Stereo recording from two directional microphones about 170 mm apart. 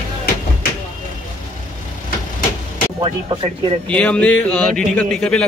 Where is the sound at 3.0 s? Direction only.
30° right (ahead or behind).